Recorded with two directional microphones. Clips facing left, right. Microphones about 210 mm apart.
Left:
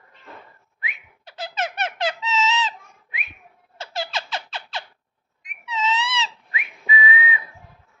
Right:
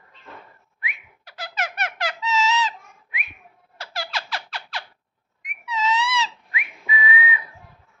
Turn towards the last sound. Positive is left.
turn(degrees=25)  # may be behind; listen again after turning